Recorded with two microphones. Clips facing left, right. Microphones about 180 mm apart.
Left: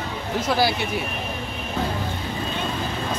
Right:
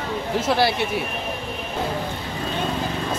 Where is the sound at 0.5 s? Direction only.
Centre (ahead or behind).